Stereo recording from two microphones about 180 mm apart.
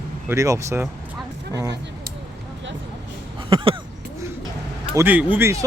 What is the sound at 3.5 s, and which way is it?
Speech, 30° right (ahead or behind).